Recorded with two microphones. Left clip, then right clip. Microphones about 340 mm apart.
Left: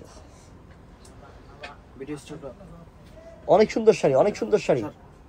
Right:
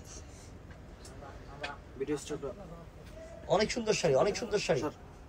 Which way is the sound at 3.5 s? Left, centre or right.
Centre.